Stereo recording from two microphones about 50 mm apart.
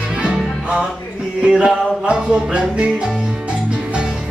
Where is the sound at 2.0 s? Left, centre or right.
Right.